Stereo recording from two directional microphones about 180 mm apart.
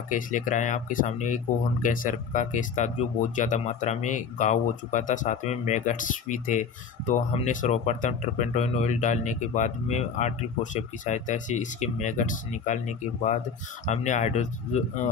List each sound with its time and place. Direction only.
0.1 s speech: 45° left (ahead or behind)